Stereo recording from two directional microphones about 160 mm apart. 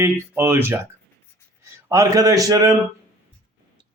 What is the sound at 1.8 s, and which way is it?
Speech, 20° right (ahead or behind).